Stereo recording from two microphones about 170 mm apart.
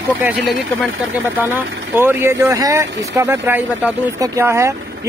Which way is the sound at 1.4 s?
10° right (ahead or behind).